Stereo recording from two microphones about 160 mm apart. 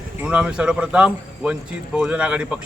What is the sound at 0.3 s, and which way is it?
Speech, 5° right (ahead or behind).